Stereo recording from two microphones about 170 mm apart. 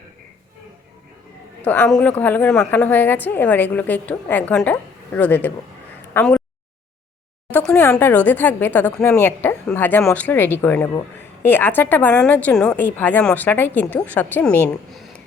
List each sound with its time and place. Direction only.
1.6 s a woman's voice: 10° left (ahead or behind)
7.5 s a woman's voice: 5° left (ahead or behind)